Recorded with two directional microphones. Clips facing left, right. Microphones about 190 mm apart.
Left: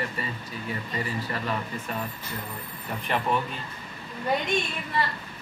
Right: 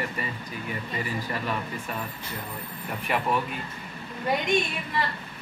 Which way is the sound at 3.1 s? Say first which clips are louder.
Even; 10° right (ahead or behind).